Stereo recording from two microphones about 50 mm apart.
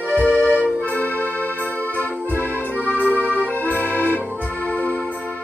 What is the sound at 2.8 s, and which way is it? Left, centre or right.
Music, right.